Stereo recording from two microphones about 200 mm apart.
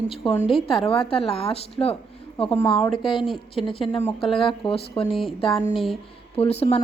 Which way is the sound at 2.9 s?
Centre (ahead or behind).